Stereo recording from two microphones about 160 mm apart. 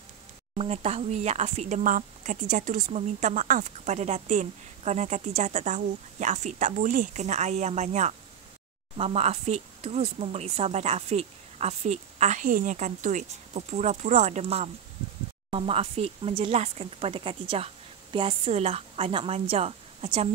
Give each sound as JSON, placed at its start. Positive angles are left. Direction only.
{"t": 0.6, "sound": "speech", "side_deg": -40}